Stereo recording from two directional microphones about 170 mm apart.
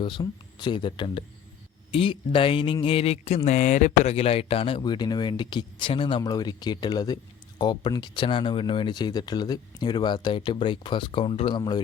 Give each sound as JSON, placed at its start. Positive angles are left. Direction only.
{"t": 0.0, "sound": "speech", "side_deg": 25}